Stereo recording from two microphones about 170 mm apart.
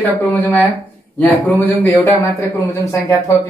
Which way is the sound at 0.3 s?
10° left (ahead or behind).